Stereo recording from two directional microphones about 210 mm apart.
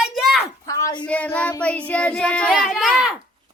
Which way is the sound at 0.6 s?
15° left (ahead or behind).